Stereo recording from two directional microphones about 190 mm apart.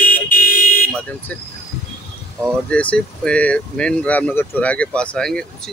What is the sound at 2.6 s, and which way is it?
Speech, 5° left (ahead or behind).